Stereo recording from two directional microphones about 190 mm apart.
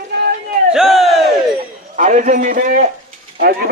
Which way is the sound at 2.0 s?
40° right (ahead or behind).